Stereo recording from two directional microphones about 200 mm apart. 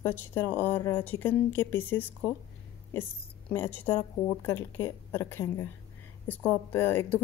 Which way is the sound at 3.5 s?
10° left (ahead or behind).